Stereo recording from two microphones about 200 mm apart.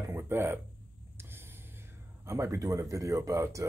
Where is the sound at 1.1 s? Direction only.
10° right (ahead or behind).